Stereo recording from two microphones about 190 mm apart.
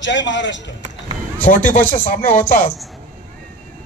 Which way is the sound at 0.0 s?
70° left (ahead or behind).